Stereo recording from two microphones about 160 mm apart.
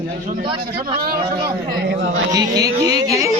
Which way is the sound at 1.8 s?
90° right.